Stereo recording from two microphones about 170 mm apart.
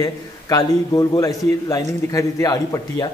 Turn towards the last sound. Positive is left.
turn(degrees=20)  # may be behind; listen again after turning